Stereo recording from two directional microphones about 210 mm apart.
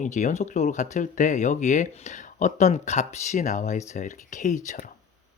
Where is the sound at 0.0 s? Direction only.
35° left (ahead or behind).